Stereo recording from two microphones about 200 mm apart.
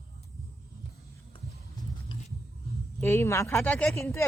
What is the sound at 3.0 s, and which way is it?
Speech, 15° left (ahead or behind).